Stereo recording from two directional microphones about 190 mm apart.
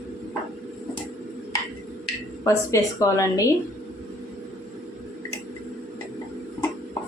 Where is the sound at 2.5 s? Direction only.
15° left (ahead or behind).